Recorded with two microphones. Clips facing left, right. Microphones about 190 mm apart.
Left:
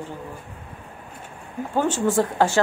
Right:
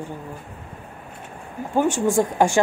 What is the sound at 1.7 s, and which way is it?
Speech, 10° right (ahead or behind).